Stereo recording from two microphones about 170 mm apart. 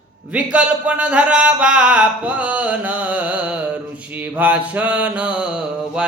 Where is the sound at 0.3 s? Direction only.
10° right (ahead or behind).